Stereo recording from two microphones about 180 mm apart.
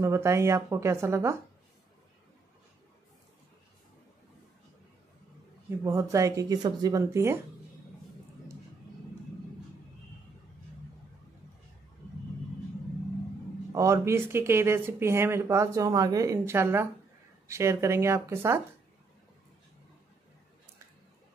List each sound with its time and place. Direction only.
0.0 s speech: 15° right (ahead or behind)
5.9 s speech: 15° right (ahead or behind)
13.7 s speech: 15° right (ahead or behind)